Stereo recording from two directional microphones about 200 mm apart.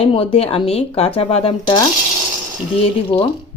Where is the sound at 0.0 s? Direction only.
25° left (ahead or behind).